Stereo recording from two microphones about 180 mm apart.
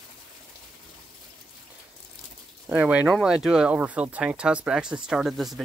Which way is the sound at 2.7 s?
10° right (ahead or behind).